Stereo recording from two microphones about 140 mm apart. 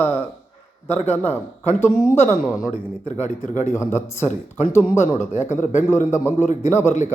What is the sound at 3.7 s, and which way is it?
Speech, 20° left (ahead or behind).